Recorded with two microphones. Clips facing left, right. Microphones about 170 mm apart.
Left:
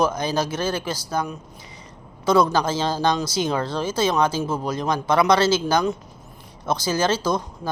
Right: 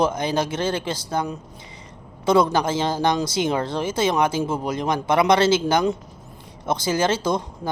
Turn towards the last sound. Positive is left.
turn(degrees=-25)  # may be behind; listen again after turning